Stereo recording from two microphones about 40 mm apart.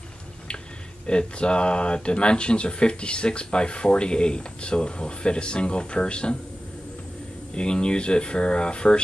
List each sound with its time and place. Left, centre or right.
1.0 s speech: left
7.5 s speech: left